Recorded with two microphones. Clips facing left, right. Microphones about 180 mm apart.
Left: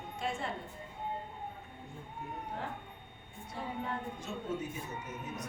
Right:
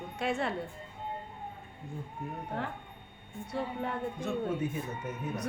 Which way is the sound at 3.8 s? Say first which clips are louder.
Right 5 dB; 55° right (ahead or behind).